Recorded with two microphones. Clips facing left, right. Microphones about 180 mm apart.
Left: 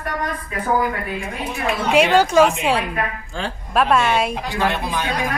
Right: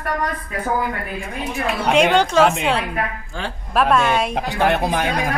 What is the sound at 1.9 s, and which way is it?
A woman's voice, 5° left (ahead or behind).